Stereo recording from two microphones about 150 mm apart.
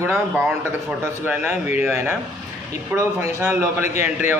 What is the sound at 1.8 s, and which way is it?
A man's voice, 15° right (ahead or behind).